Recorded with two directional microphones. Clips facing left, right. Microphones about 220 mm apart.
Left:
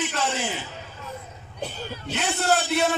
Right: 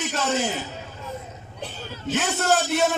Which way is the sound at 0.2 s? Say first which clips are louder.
Right 3 dB; 40° right (ahead or behind).